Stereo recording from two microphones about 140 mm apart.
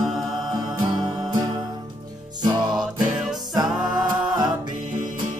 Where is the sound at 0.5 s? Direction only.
30° right (ahead or behind).